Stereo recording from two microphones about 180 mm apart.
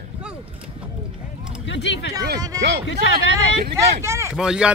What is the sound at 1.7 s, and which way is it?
Speech, 75° left (ahead or behind).